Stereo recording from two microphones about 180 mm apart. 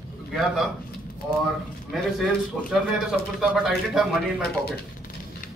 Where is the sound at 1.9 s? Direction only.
Centre (ahead or behind).